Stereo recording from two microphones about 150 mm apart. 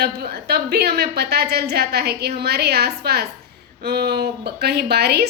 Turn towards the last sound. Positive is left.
turn(degrees=-90)